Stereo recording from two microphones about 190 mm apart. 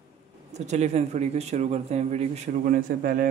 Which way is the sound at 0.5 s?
35° right (ahead or behind).